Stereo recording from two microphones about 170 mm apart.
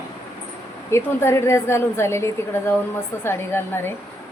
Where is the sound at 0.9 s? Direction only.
15° left (ahead or behind).